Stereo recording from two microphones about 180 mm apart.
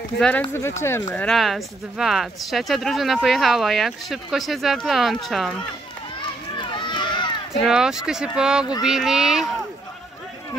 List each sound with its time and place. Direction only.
0.2 s speech: 10° left (ahead or behind)
1.1 s speech: 5° left (ahead or behind)
6.6 s a sound: 25° left (ahead or behind)
7.6 s speech: centre (ahead or behind)